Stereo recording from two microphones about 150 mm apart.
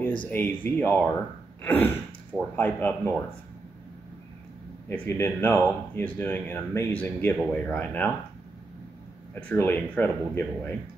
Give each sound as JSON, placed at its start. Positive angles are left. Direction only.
{"t": 0.2, "sound": "speech", "side_deg": 10}
{"t": 4.8, "sound": "speech", "side_deg": 15}
{"t": 9.3, "sound": "speech", "side_deg": 10}